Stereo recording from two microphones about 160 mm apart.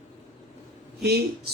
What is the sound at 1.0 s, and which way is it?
Speech, 90° right.